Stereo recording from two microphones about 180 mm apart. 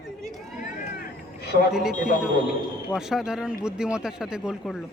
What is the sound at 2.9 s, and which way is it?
Speech, 5° right (ahead or behind).